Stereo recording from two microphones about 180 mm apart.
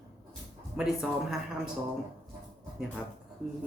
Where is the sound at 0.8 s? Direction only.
5° right (ahead or behind).